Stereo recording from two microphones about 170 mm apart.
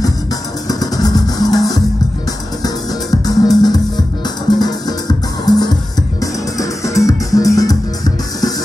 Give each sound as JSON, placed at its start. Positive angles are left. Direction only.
{"t": 0.7, "sound": "music", "side_deg": 20}